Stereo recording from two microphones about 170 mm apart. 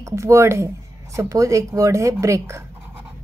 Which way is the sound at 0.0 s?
15° right (ahead or behind).